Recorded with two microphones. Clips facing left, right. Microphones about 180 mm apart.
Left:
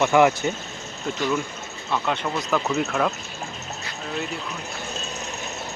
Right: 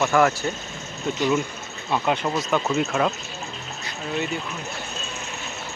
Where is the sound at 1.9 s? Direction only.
15° right (ahead or behind).